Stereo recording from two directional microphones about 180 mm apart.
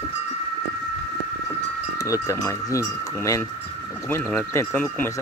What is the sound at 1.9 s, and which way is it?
Speech, 20° left (ahead or behind).